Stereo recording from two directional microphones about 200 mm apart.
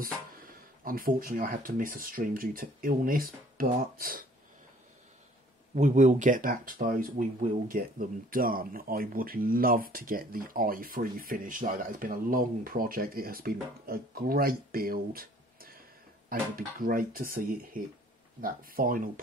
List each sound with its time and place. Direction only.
0.0 s speech: 45° right (ahead or behind)
5.8 s speech: 40° right (ahead or behind)